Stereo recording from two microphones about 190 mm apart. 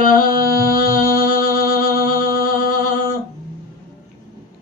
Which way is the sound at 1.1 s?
50° left (ahead or behind).